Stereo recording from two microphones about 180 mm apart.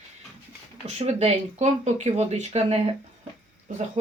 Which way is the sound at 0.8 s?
35° right (ahead or behind).